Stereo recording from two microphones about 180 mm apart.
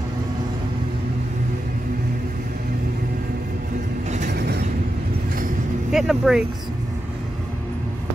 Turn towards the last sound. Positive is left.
turn(degrees=0)  # may be behind; listen again after turning